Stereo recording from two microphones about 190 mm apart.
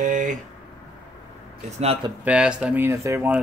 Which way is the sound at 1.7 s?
30° right (ahead or behind).